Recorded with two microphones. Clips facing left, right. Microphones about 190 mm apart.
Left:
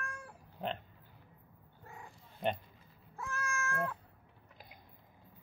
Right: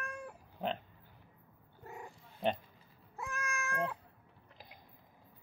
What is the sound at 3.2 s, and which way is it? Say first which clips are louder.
Cat: left 1 dB; 15° right (ahead or behind).